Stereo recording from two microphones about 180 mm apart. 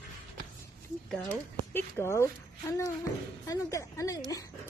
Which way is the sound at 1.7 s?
15° left (ahead or behind).